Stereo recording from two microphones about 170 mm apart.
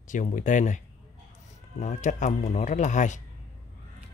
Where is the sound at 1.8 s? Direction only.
45° left (ahead or behind).